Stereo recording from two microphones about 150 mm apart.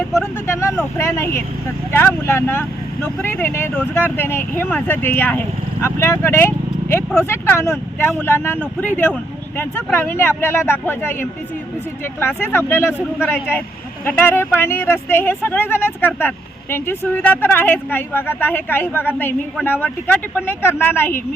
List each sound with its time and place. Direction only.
0.1 s speech: 20° left (ahead or behind)